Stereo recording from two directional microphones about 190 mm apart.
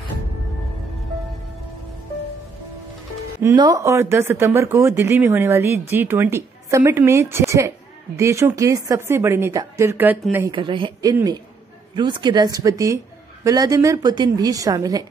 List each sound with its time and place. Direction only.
3.4 s speech: 20° right (ahead or behind)
10.5 s a woman's voice: 25° right (ahead or behind)